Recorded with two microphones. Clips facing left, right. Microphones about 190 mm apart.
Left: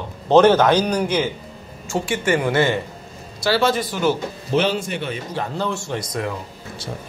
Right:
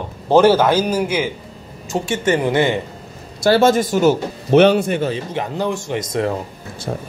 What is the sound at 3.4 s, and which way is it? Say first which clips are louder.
Speech: right 6 dB; 45° right (ahead or behind).